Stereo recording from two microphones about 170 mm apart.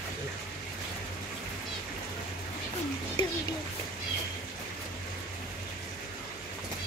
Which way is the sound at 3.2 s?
30° left (ahead or behind).